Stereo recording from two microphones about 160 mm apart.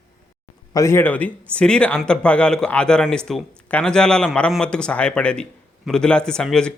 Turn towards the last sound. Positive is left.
turn(degrees=5)  # may be behind; listen again after turning